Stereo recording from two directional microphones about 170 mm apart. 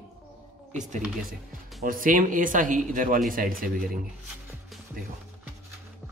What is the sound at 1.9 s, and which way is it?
Speech, 55° right (ahead or behind).